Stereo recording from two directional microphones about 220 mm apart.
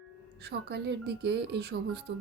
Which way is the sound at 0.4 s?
50° right (ahead or behind).